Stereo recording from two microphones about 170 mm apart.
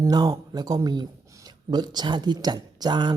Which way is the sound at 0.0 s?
20° right (ahead or behind).